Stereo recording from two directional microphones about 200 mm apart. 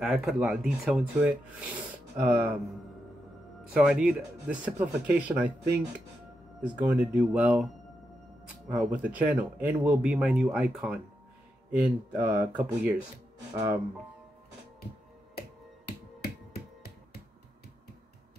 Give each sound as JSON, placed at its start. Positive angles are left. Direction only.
{"t": 0.0, "sound": "speech", "side_deg": 0}
{"t": 3.7, "sound": "speech", "side_deg": -5}
{"t": 6.6, "sound": "speech", "side_deg": -10}
{"t": 8.7, "sound": "speech", "side_deg": -10}
{"t": 13.5, "sound": "speech", "side_deg": -20}